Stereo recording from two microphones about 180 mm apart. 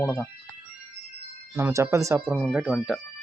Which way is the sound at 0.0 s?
Centre (ahead or behind).